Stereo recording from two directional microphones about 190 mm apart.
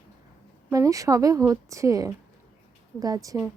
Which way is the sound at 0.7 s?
15° right (ahead or behind).